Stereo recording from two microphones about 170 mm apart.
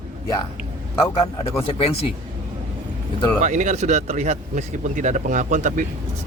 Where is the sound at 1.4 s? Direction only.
35° left (ahead or behind).